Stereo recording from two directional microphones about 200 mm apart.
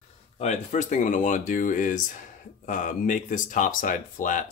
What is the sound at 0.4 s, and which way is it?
Speech, 35° left (ahead or behind).